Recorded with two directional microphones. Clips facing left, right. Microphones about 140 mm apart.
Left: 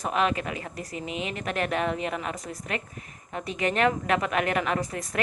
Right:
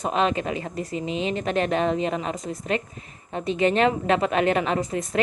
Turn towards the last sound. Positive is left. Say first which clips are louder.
# right 5 dB
turn(degrees=-25)  # may be behind; listen again after turning